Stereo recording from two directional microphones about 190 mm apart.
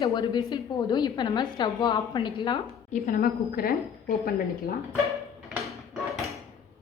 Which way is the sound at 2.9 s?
50° left (ahead or behind).